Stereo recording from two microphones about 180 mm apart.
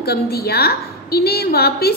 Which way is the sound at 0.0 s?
60° left (ahead or behind).